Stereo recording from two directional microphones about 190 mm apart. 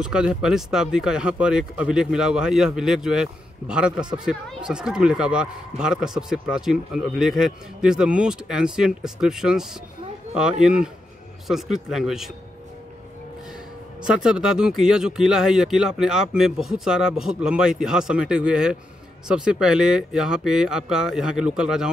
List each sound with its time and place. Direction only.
0.0 s speech: 5° right (ahead or behind)
14.0 s speech: 5° right (ahead or behind)